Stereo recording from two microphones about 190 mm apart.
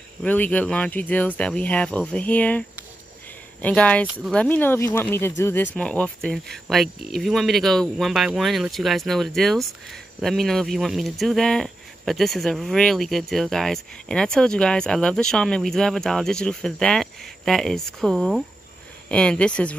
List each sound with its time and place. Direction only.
0.2 s speech: 10° left (ahead or behind)